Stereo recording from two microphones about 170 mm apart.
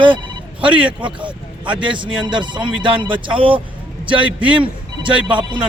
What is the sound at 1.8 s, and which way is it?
A man's voice, 30° right (ahead or behind).